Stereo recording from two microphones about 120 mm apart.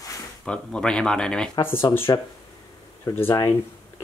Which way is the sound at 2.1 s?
30° left (ahead or behind).